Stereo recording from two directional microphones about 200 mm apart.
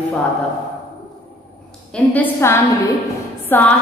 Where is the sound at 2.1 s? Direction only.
10° left (ahead or behind).